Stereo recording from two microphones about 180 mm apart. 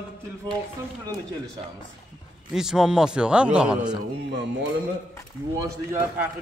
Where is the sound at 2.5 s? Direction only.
5° right (ahead or behind).